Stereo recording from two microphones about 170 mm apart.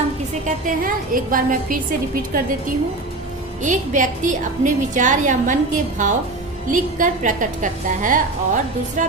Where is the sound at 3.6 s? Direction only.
50° right (ahead or behind).